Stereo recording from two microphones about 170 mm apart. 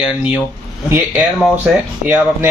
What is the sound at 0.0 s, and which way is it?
Speech, 5° right (ahead or behind).